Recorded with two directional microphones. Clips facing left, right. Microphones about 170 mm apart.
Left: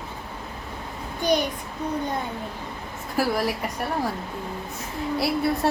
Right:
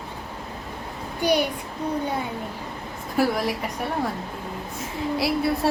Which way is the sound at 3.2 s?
Centre (ahead or behind).